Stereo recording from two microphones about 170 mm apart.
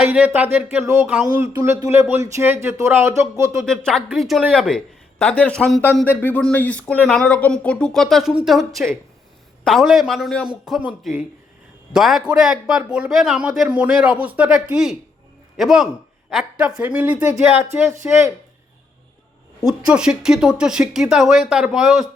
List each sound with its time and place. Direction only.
0.0 s speech: 10° right (ahead or behind)
1.5 s speech: 20° right (ahead or behind)
3.7 s speech: 5° left (ahead or behind)
19.6 s speech: 5° right (ahead or behind)